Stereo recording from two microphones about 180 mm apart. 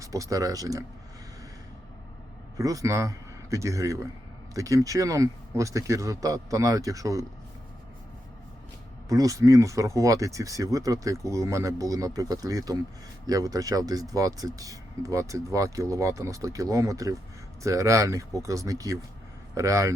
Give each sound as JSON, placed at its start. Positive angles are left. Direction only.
{"t": 0.0, "sound": "speech", "side_deg": -20}
{"t": 2.6, "sound": "a man's voice", "side_deg": -20}
{"t": 9.0, "sound": "speech", "side_deg": -20}